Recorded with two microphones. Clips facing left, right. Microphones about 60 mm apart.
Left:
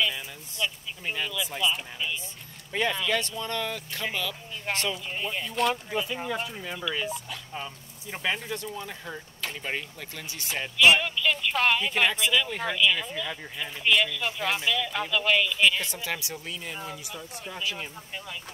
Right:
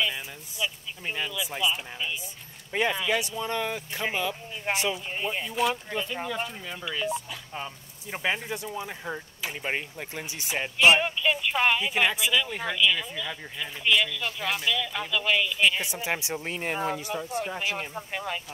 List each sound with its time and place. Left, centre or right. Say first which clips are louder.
0.0 s speech: left 1 dB; centre
9.7 s speech: right 4 dB; right
11.3 s speech: even; centre
16.4 s speech: right 11 dB; right
17.6 s speech: right 3 dB; right